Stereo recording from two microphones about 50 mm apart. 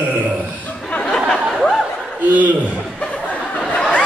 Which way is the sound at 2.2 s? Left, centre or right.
Right.